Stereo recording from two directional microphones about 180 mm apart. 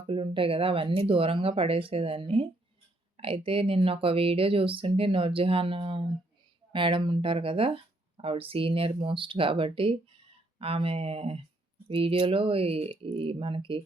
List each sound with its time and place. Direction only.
0.1 s speech: 30° right (ahead or behind)